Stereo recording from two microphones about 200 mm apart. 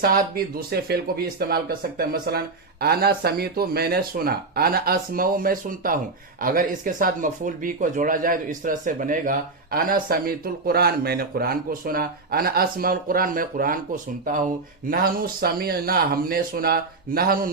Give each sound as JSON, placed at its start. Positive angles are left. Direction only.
{"t": 0.0, "sound": "speech", "side_deg": -45}